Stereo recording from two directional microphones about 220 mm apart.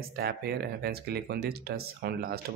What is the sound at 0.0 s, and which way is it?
Speech, 45° right (ahead or behind).